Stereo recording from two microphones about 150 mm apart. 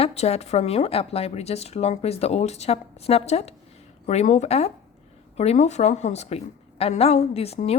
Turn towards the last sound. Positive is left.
turn(degrees=45)  # may be behind; listen again after turning